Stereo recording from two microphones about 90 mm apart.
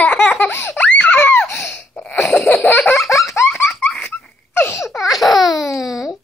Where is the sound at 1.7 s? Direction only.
15° left (ahead or behind).